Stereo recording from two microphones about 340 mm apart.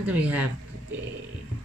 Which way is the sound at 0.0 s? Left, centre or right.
Centre.